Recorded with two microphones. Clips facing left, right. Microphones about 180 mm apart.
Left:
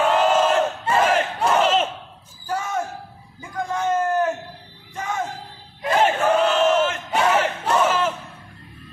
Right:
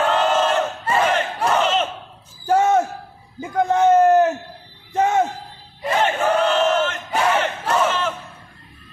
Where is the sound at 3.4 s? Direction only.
25° right (ahead or behind).